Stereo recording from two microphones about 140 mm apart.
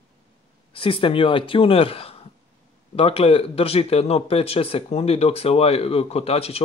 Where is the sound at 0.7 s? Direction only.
40° left (ahead or behind).